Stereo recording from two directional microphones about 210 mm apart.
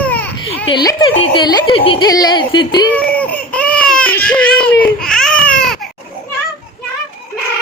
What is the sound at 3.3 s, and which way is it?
Baby cry, 5° left (ahead or behind).